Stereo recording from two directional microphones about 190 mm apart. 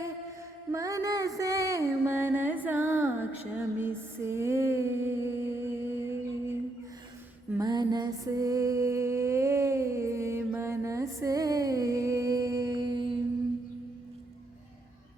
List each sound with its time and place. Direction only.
0.7 s music: 15° right (ahead or behind)
3.8 s a sound: 10° right (ahead or behind)
7.5 s music: 20° right (ahead or behind)